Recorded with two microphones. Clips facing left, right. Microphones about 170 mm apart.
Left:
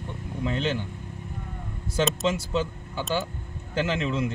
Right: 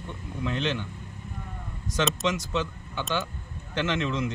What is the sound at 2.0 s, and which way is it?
Speech, centre (ahead or behind).